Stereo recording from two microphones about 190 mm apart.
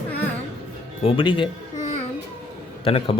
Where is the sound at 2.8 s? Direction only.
30° left (ahead or behind).